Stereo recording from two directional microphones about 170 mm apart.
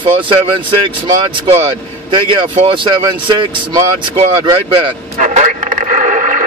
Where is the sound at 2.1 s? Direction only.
30° right (ahead or behind).